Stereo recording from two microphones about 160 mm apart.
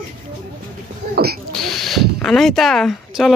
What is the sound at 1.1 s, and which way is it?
Speech, 70° right (ahead or behind).